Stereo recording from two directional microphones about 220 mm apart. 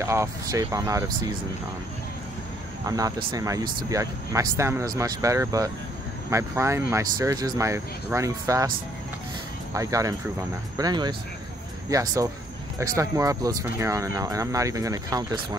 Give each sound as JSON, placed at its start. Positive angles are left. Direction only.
{"t": 0.0, "sound": "speech", "side_deg": -15}
{"t": 3.3, "sound": "speech", "side_deg": -15}
{"t": 9.8, "sound": "speech", "side_deg": -15}